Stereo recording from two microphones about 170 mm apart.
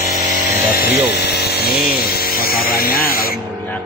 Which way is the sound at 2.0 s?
60° left (ahead or behind).